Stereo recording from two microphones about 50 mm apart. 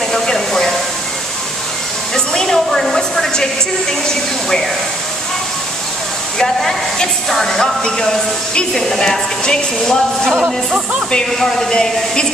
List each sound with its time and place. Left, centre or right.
0.1 s a sound: centre
2.1 s a woman's voice: centre
6.3 s speech: centre
11.3 s speech: centre